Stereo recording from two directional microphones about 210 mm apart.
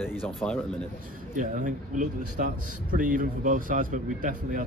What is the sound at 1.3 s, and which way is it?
A man's voice, 40° right (ahead or behind).